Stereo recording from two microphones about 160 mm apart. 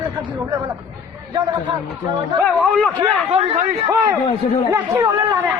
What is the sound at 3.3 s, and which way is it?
Speech, 40° right (ahead or behind).